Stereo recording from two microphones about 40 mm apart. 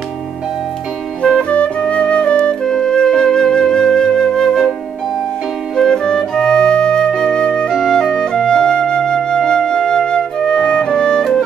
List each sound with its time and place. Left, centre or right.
1.2 s music: left
2.6 s music: centre
3.5 s flute: centre
5.8 s music: centre
7.2 s flute: centre
8.0 s music: left